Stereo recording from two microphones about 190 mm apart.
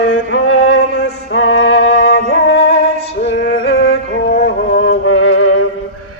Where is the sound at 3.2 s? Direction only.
65° left (ahead or behind).